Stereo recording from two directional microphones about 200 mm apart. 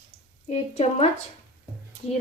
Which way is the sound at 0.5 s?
30° left (ahead or behind).